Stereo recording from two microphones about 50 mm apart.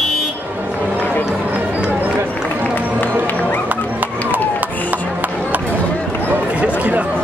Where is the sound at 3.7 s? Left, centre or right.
Right.